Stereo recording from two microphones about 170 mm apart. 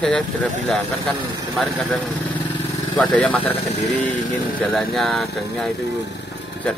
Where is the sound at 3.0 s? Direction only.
5° left (ahead or behind).